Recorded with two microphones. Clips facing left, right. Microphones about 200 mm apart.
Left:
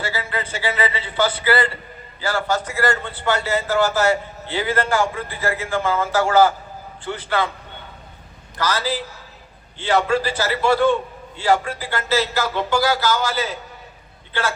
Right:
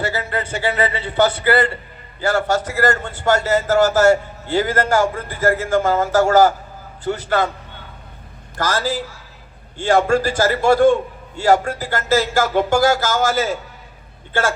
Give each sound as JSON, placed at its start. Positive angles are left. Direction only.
{"t": 0.0, "sound": "a man's voice", "side_deg": -45}
{"t": 2.8, "sound": "a man's voice", "side_deg": -45}
{"t": 8.5, "sound": "a man's voice", "side_deg": -45}